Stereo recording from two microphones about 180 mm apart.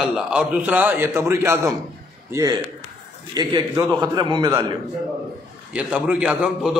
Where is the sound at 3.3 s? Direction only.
20° right (ahead or behind).